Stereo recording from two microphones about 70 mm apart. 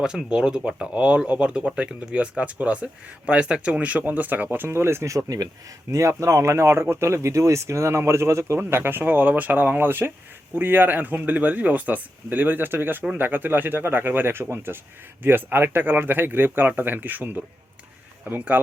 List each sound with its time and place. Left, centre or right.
0.0 s speech: centre; by 8.5 s right
8.5 s speech: right